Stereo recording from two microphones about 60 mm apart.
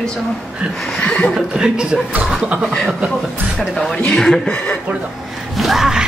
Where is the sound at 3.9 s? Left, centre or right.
Centre.